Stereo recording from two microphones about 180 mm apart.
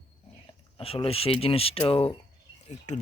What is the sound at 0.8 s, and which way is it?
Speech, 30° left (ahead or behind).